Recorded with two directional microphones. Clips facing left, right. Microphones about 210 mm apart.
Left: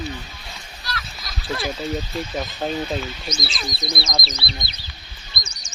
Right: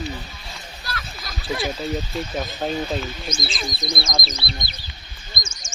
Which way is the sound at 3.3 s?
50° right (ahead or behind).